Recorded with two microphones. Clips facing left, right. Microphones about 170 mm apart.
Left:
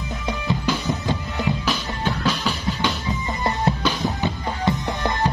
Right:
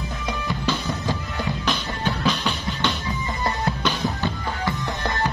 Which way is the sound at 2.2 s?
10° left (ahead or behind).